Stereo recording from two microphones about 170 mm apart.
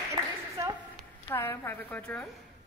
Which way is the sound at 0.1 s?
20° right (ahead or behind).